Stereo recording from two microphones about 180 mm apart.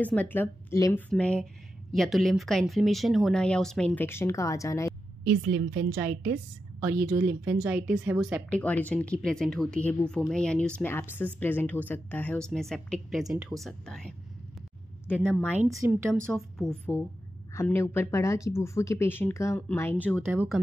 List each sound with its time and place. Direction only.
0.0 s speech: 10° left (ahead or behind)
1.1 s speech: 5° left (ahead or behind)
5.2 s a woman's voice: 75° right (ahead or behind)
7.4 s speech: 10° right (ahead or behind)
8.5 s speech: 5° left (ahead or behind)
15.5 s speech: 15° right (ahead or behind)
16.3 s speech: centre (ahead or behind)
17.6 s speech: 15° left (ahead or behind)
20.2 s speech: centre (ahead or behind)